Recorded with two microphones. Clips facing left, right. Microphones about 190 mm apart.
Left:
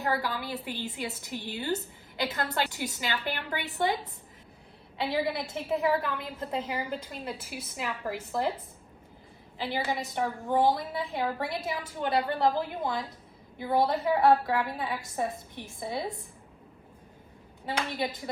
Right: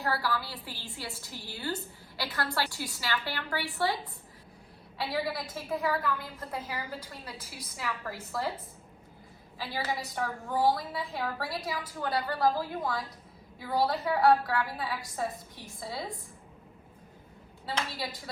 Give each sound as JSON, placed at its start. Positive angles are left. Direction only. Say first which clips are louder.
{"t": 0.0, "sound": "a woman's voice", "louder": "left 1 dB", "side_deg": 20}
{"t": 4.9, "sound": "a woman's voice", "louder": "left 3 dB", "side_deg": 25}
{"t": 9.6, "sound": "a woman's voice", "louder": "left 3 dB", "side_deg": 20}
{"t": 17.7, "sound": "a woman's voice", "louder": "left 4 dB", "side_deg": 20}